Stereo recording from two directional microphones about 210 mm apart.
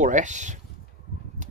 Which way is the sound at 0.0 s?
35° right (ahead or behind).